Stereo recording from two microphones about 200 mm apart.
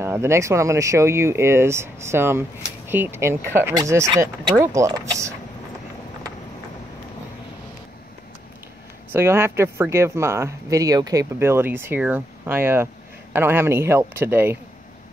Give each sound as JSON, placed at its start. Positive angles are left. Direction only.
{"t": 0.0, "sound": "speech", "side_deg": -15}
{"t": 9.1, "sound": "speech", "side_deg": -10}